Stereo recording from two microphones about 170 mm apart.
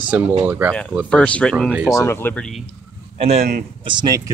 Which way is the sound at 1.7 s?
5° right (ahead or behind).